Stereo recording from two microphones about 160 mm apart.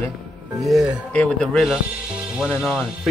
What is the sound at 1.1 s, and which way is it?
Speech, 5° left (ahead or behind).